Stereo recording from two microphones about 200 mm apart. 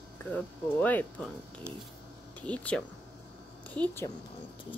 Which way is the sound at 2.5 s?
5° left (ahead or behind).